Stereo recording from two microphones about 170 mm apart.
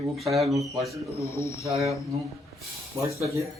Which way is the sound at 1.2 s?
15° left (ahead or behind).